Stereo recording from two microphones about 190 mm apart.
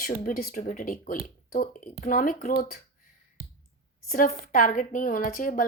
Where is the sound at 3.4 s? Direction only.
30° right (ahead or behind).